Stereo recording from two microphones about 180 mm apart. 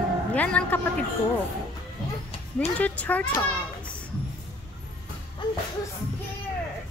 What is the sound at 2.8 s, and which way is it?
Speech, 10° left (ahead or behind).